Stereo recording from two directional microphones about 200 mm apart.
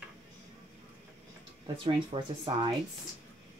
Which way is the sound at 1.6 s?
25° right (ahead or behind).